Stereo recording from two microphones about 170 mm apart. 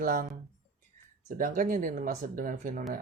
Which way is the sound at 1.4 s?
55° right (ahead or behind).